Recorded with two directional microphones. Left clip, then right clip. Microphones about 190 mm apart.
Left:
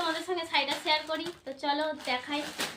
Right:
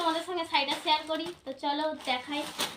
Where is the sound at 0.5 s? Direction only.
15° left (ahead or behind).